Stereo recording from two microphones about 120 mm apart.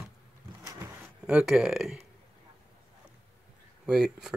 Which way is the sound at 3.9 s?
5° right (ahead or behind).